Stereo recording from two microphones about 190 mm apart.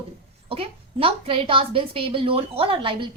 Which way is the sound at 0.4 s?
30° right (ahead or behind).